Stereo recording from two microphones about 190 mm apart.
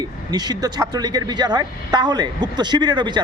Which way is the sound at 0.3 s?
20° right (ahead or behind).